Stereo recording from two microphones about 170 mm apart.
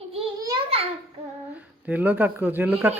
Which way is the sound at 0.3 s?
20° right (ahead or behind).